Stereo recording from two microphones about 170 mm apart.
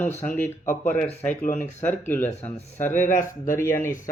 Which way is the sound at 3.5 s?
15° left (ahead or behind).